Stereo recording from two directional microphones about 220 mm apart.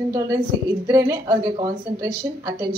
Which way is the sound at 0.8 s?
15° right (ahead or behind).